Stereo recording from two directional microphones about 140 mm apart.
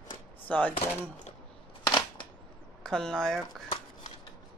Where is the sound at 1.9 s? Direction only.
35° left (ahead or behind).